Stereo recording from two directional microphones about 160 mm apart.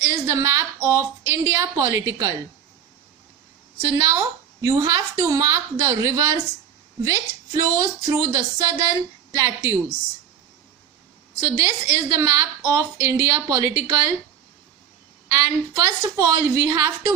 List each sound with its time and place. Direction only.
0.0 s a woman's voice: 20° right (ahead or behind)
3.8 s a woman's voice: 20° right (ahead or behind)
11.3 s a woman's voice: 20° right (ahead or behind)
15.3 s a woman's voice: 20° right (ahead or behind)